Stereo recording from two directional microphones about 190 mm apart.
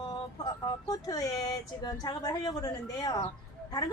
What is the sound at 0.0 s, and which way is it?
A woman's voice, 20° left (ahead or behind).